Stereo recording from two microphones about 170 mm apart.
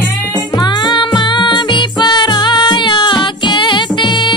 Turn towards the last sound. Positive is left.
turn(degrees=30)  # may be behind; listen again after turning